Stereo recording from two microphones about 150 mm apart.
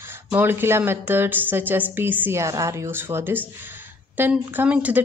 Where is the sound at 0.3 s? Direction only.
15° right (ahead or behind).